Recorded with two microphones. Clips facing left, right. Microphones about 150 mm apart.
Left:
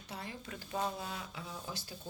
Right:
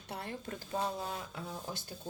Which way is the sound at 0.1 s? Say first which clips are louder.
Right 4 dB; 55° right (ahead or behind).